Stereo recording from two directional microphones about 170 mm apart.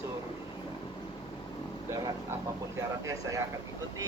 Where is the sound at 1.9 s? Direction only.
15° right (ahead or behind).